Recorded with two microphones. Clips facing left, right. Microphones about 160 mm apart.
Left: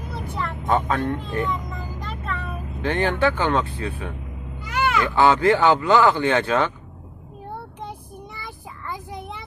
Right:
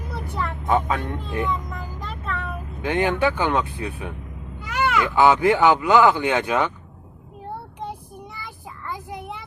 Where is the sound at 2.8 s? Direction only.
15° right (ahead or behind).